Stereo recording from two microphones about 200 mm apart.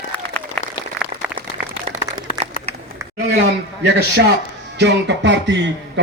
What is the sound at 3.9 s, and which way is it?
Speech, 55° right (ahead or behind).